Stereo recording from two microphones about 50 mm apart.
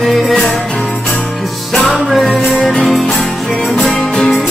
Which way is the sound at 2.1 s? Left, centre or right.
Centre.